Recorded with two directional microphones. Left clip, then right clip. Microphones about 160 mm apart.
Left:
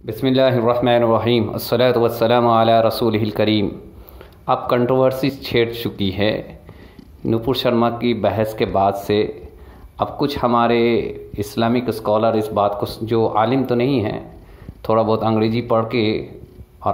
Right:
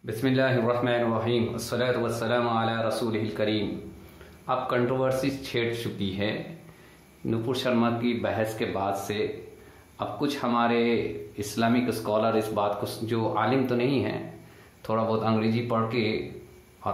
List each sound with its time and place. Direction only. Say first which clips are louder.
0.0 s speech: left 9 dB; 50° left (ahead or behind)